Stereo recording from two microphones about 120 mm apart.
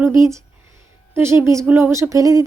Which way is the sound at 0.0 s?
25° right (ahead or behind).